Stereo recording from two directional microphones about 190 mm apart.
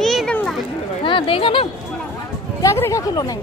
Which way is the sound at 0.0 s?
Centre (ahead or behind).